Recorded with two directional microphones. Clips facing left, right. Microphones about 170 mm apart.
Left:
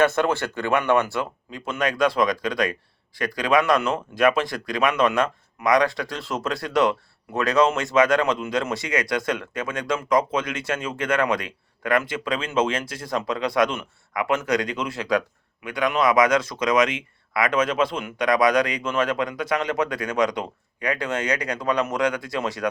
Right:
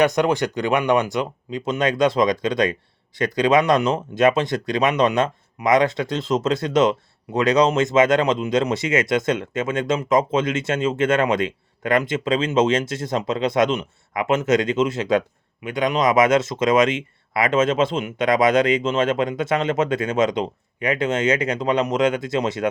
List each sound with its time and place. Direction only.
0.0 s speech: 15° right (ahead or behind)